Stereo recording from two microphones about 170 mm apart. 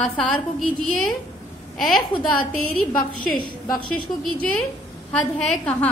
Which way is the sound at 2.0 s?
25° left (ahead or behind).